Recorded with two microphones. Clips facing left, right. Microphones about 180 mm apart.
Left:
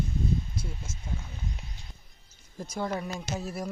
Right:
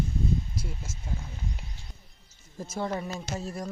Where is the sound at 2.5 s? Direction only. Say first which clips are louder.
Even; centre (ahead or behind).